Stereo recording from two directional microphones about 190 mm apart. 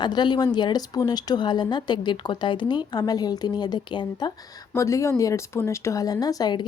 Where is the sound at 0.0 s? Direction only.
25° left (ahead or behind).